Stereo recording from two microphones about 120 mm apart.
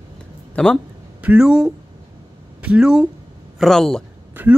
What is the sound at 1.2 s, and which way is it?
A man's voice, 10° right (ahead or behind).